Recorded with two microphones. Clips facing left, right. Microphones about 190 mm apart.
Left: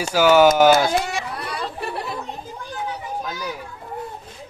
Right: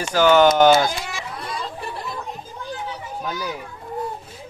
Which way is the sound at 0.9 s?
65° left (ahead or behind).